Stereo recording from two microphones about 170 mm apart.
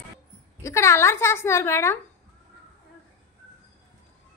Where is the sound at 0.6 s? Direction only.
15° left (ahead or behind).